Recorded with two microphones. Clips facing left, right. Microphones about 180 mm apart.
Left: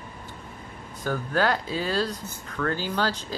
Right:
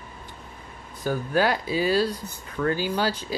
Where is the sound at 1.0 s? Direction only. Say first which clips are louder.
Right 2 dB; 10° right (ahead or behind).